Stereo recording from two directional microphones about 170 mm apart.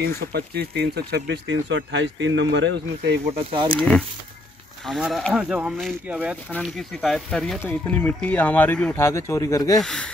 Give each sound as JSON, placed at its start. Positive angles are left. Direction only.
{"t": 0.0, "sound": "speech", "side_deg": -70}
{"t": 3.5, "sound": "speech", "side_deg": -30}
{"t": 4.8, "sound": "speech", "side_deg": 0}
{"t": 6.6, "sound": "speech", "side_deg": 0}
{"t": 9.8, "sound": "speech", "side_deg": 5}